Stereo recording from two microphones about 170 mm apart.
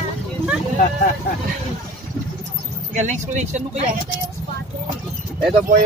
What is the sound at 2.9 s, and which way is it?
Speech, 45° right (ahead or behind).